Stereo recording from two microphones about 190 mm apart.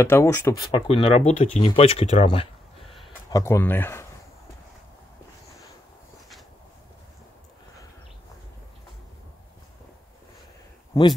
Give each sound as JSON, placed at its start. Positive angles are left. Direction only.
{"t": 0.0, "sound": "speech", "side_deg": 10}
{"t": 3.3, "sound": "speech", "side_deg": 15}